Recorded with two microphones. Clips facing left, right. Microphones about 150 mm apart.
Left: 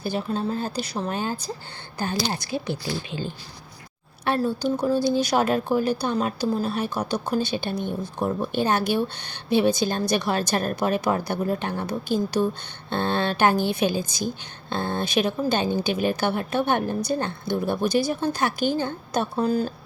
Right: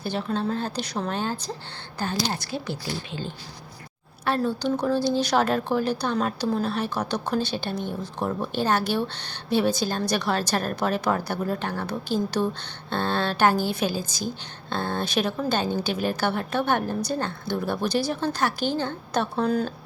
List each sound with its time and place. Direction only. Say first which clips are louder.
0.0 s a woman's voice: left 1 dB; 10° left (ahead or behind)
4.4 s a woman's voice: left 1 dB; 5° left (ahead or behind)
9.1 s speech: even; 55° left (ahead or behind)
9.5 s a woman's voice: left 2 dB; 15° left (ahead or behind)